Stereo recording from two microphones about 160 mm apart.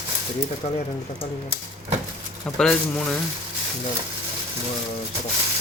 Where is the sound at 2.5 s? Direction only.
5° left (ahead or behind).